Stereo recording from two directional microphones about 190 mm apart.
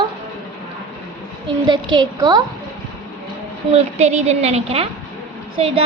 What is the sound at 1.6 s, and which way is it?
Speech, 25° right (ahead or behind).